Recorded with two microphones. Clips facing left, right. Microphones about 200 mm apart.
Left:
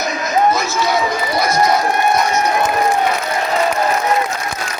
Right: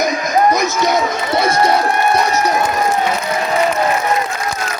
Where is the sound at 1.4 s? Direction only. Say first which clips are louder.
Right 1 dB; 30° right (ahead or behind).